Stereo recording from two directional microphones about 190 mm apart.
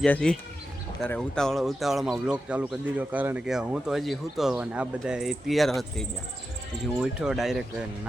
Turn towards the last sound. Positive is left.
turn(degrees=0)  # may be behind; listen again after turning